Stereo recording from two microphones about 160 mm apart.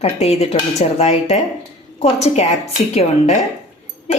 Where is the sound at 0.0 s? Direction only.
40° left (ahead or behind).